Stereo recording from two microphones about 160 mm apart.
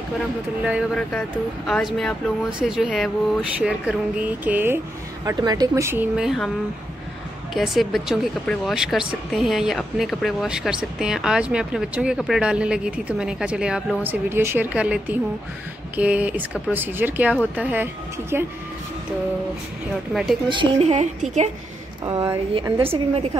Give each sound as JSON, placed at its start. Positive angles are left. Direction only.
{"t": 1.7, "sound": "speech", "side_deg": 0}
{"t": 5.2, "sound": "speech", "side_deg": -25}
{"t": 6.1, "sound": "speech", "side_deg": 0}
{"t": 7.5, "sound": "a woman's voice", "side_deg": 0}
{"t": 20.4, "sound": "speech", "side_deg": -30}
{"t": 20.9, "sound": "a woman's voice", "side_deg": -45}
{"t": 22.0, "sound": "speech", "side_deg": -20}
{"t": 22.5, "sound": "a woman's voice", "side_deg": -35}